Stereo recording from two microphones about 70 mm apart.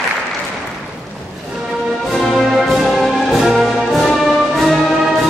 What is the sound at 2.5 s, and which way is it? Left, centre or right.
Music, centre.